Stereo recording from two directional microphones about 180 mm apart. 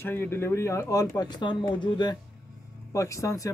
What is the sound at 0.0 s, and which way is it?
Speech, 10° left (ahead or behind).